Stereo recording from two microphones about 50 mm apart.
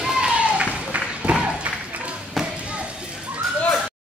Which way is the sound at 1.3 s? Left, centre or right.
Right.